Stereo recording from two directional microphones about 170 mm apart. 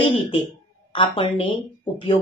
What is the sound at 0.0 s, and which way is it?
A woman's voice, 30° left (ahead or behind).